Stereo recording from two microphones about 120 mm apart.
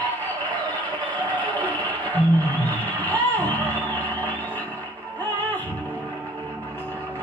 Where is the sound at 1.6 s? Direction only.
15° left (ahead or behind).